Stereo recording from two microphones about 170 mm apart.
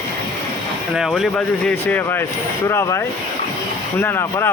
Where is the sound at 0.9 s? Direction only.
Centre (ahead or behind).